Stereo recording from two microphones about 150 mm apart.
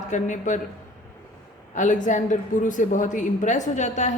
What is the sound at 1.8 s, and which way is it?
Speech, 55° left (ahead or behind).